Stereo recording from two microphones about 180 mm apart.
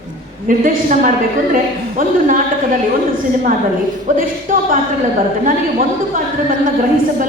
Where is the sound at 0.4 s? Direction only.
50° right (ahead or behind).